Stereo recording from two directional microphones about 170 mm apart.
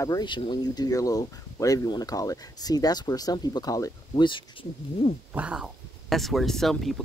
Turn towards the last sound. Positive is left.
turn(degrees=0)  # may be behind; listen again after turning